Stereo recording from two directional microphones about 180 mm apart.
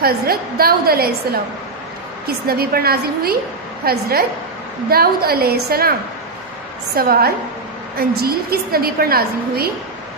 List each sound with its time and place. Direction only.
0.0 s a woman's voice: 55° right (ahead or behind)
7.0 s a woman's voice: 60° right (ahead or behind)